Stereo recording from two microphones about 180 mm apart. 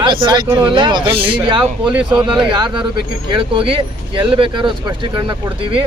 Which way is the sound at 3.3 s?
30° right (ahead or behind).